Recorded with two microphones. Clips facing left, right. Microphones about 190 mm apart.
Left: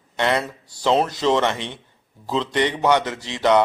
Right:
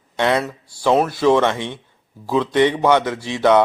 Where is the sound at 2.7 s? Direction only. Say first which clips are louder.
Right 3 dB; 15° left (ahead or behind).